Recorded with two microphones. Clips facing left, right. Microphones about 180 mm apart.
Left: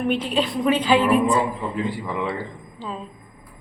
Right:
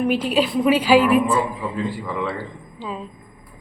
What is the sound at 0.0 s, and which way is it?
Speech, 5° right (ahead or behind).